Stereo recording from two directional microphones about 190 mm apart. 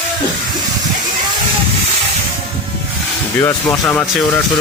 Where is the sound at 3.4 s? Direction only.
15° left (ahead or behind).